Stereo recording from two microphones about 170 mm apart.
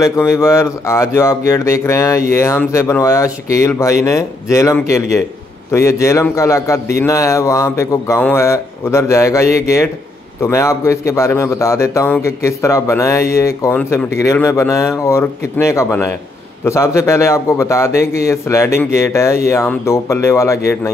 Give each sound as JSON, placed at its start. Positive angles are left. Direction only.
{"t": 0.0, "sound": "speech", "side_deg": 15}